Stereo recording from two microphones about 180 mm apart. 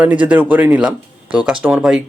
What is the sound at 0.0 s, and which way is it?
Speech, 10° right (ahead or behind).